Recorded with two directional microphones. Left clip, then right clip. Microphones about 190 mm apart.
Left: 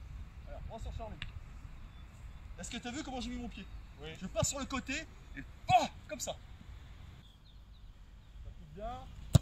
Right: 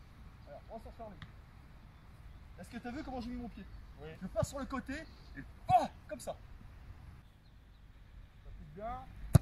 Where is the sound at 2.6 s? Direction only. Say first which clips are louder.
Left 3 dB; 25° right (ahead or behind).